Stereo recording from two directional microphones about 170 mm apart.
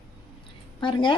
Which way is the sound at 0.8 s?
30° left (ahead or behind).